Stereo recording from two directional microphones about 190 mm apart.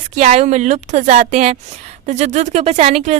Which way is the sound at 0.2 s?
40° right (ahead or behind).